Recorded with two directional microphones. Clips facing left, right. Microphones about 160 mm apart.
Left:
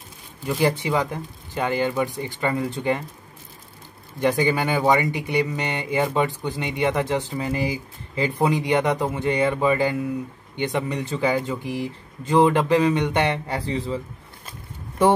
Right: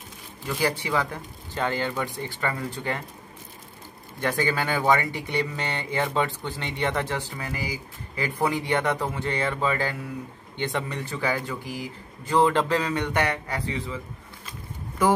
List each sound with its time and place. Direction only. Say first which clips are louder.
0.5 s speech: left 5 dB; 20° left (ahead or behind)
4.2 s speech: left 5 dB; 15° left (ahead or behind); by 14.5 s 35° left (ahead or behind)